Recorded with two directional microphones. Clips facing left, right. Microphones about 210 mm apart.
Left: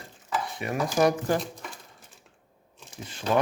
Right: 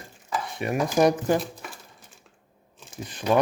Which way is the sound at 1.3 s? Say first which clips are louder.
Right 3 dB; 5° right (ahead or behind).